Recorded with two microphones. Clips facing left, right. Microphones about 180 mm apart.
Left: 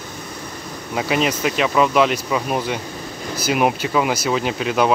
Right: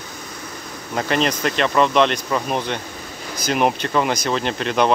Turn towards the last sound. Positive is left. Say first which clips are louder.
# left 1 dB
turn(degrees=5)  # may be behind; listen again after turning